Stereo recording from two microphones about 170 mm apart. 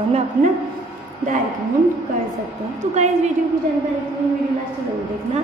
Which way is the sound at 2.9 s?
40° right (ahead or behind).